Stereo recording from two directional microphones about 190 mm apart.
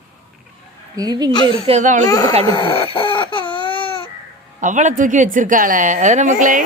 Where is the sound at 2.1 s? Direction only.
15° left (ahead or behind).